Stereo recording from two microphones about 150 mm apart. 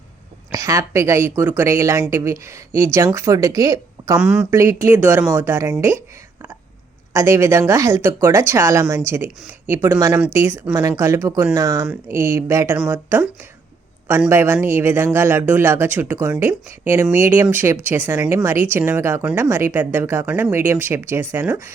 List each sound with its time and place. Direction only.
0.5 s a woman's voice: 20° right (ahead or behind)
4.2 s a woman's voice: 10° right (ahead or behind)
4.5 s a woman's voice: 20° right (ahead or behind)
7.1 s a woman's voice: 20° right (ahead or behind)